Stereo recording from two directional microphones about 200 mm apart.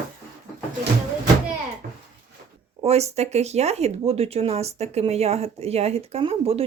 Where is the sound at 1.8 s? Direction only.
45° right (ahead or behind).